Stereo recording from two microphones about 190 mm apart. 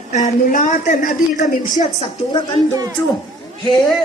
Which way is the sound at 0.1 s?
40° left (ahead or behind).